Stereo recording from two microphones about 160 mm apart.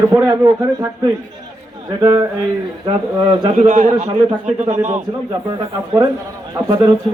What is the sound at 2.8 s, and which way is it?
Speech, 30° right (ahead or behind).